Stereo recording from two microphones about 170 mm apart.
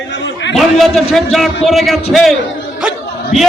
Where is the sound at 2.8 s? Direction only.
5° right (ahead or behind).